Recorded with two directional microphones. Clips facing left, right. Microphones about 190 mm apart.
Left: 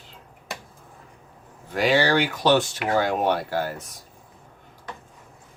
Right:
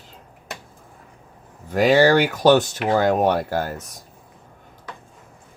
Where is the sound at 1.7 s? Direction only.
45° right (ahead or behind).